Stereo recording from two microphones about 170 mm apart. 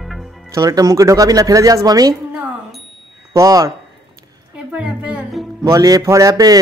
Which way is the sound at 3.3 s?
20° right (ahead or behind).